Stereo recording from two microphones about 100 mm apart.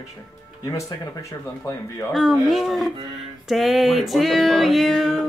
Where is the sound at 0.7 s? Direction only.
35° left (ahead or behind).